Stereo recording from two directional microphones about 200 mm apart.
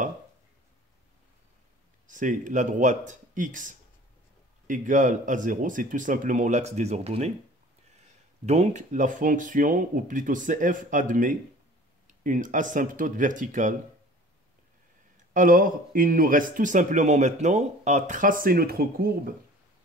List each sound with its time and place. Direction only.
2.0 s speech: 40° right (ahead or behind)
8.5 s speech: 35° right (ahead or behind)
15.3 s a man's voice: 45° right (ahead or behind)